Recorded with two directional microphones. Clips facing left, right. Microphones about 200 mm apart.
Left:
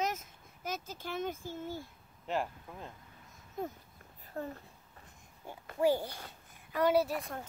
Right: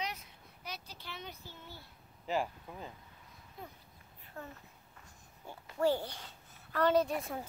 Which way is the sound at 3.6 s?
45° left (ahead or behind).